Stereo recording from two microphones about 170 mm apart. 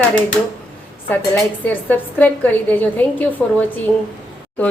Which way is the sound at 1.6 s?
10° left (ahead or behind).